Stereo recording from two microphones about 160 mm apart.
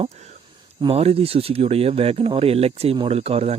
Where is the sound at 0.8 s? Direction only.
35° right (ahead or behind).